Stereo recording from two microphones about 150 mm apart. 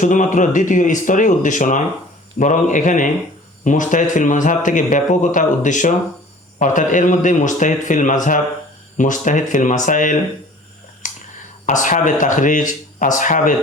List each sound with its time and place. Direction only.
0.0 s a man's voice: 55° left (ahead or behind)
11.6 s a man's voice: 55° left (ahead or behind)